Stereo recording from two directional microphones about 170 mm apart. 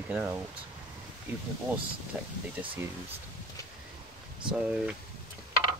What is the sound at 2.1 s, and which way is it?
Speech, 5° right (ahead or behind).